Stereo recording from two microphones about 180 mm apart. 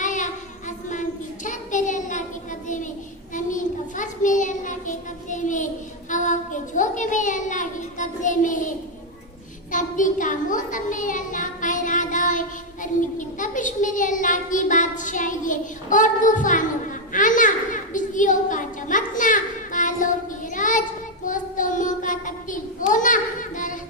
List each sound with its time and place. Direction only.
0.0 s child singing: 45° left (ahead or behind)
1.5 s child singing: 45° left (ahead or behind)
3.3 s child singing: 45° left (ahead or behind)
6.1 s a sound: 45° left (ahead or behind)
9.7 s a sound: 45° left (ahead or behind)
20.6 s child singing: 45° left (ahead or behind)